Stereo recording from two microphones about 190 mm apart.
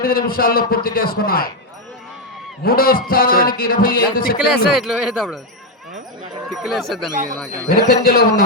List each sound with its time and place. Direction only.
0.0 s a man's voice: 50° left (ahead or behind)
2.6 s a man's voice: 50° left (ahead or behind)
4.4 s speech: centre (ahead or behind)
6.5 s speech: centre (ahead or behind)
7.9 s a man's voice: 55° left (ahead or behind)